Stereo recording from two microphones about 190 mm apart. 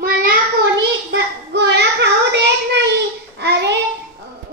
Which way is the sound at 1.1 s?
65° right (ahead or behind).